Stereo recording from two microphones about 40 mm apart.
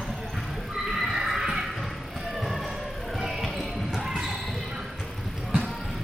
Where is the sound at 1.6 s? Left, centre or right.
Centre.